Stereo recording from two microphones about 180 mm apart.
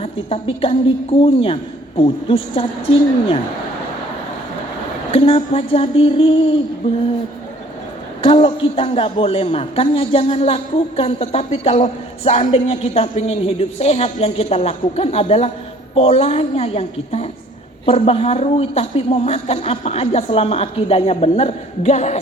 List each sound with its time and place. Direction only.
0.0 s a man's voice: 30° left (ahead or behind)
5.1 s a man's voice: 30° left (ahead or behind)
8.2 s a man's voice: 30° left (ahead or behind)